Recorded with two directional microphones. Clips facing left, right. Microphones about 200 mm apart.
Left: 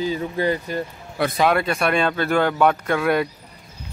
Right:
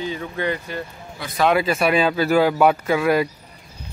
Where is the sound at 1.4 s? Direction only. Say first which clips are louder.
Right 3 dB; centre (ahead or behind).